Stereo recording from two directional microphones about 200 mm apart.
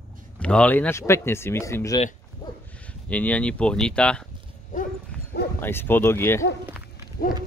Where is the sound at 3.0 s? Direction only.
5° left (ahead or behind).